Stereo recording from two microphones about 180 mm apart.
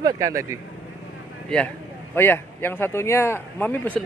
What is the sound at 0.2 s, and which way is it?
Speech, 20° right (ahead or behind).